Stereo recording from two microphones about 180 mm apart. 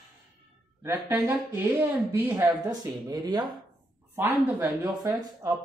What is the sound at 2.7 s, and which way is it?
Speech, 20° right (ahead or behind).